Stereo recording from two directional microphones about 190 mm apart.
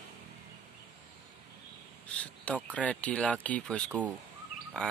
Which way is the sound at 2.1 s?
5° left (ahead or behind).